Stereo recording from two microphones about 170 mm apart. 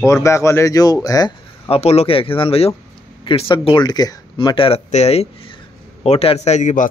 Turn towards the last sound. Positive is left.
turn(degrees=45)  # may be behind; listen again after turning